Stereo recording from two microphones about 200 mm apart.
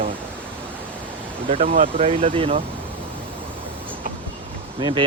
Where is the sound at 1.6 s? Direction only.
40° right (ahead or behind).